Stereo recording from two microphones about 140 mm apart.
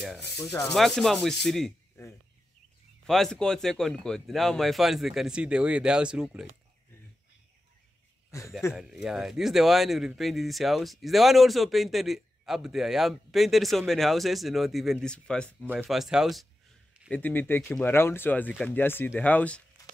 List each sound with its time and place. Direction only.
0.7 s speech: centre (ahead or behind)
3.1 s speech: 5° left (ahead or behind)
8.3 s speech: 20° left (ahead or behind)
8.7 s speech: 5° right (ahead or behind)
15.9 s speech: 5° right (ahead or behind)
17.1 s speech: 15° left (ahead or behind)